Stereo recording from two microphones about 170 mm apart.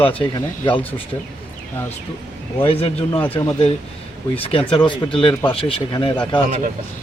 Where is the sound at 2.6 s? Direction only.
35° left (ahead or behind).